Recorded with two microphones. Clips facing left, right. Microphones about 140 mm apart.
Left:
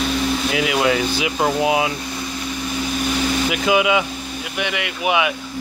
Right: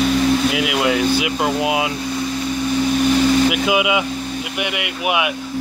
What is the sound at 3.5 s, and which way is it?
Speech, 5° right (ahead or behind).